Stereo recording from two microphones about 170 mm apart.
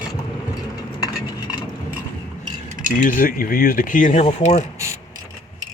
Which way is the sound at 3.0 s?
55° left (ahead or behind).